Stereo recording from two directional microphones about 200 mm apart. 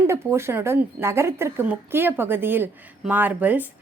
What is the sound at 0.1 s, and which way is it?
A woman's voice, 15° right (ahead or behind).